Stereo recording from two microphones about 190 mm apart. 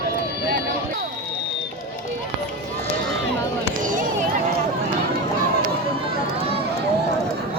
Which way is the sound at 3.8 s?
45° right (ahead or behind).